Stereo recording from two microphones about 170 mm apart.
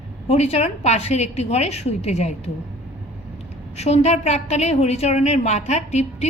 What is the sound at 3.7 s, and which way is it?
Speech, 40° left (ahead or behind).